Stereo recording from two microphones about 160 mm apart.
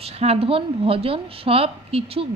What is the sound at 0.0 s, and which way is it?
Speech, 40° right (ahead or behind).